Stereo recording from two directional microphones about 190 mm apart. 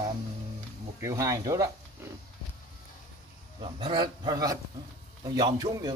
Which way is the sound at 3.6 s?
25° right (ahead or behind).